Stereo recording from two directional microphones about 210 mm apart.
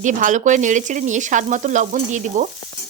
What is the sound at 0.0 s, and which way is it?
A woman's voice, 35° right (ahead or behind).